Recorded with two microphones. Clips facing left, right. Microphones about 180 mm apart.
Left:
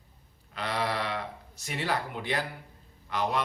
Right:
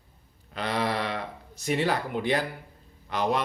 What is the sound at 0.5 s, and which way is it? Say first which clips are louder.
Speech: right 3 dB; 20° right (ahead or behind).